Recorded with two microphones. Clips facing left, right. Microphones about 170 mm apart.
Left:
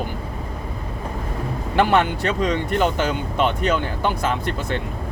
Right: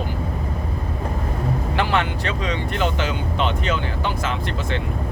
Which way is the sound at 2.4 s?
45° left (ahead or behind).